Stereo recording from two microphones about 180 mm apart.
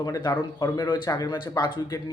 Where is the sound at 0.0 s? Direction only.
20° left (ahead or behind).